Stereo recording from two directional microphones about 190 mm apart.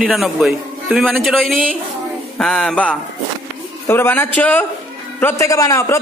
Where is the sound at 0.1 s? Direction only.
Centre (ahead or behind).